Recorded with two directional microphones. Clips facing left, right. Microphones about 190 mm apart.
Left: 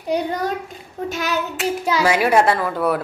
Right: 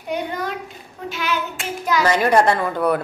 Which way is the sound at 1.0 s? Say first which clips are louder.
Left 2 dB; 45° left (ahead or behind).